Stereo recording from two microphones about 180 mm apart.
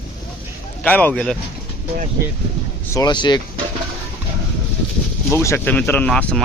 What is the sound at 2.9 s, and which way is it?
Speech, 25° left (ahead or behind).